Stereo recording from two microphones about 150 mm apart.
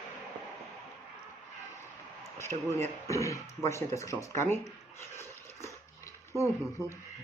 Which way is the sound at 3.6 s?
20° left (ahead or behind).